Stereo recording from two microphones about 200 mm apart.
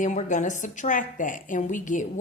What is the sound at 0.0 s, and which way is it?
A woman's voice, 40° left (ahead or behind).